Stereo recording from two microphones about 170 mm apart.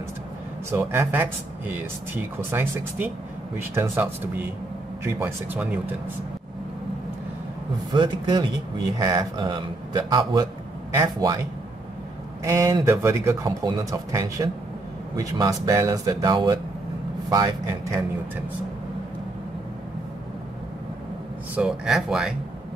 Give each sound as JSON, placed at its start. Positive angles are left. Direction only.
{"t": 0.7, "sound": "speech", "side_deg": -15}
{"t": 7.9, "sound": "speech", "side_deg": -25}
{"t": 12.4, "sound": "speech", "side_deg": -15}
{"t": 21.5, "sound": "speech", "side_deg": 0}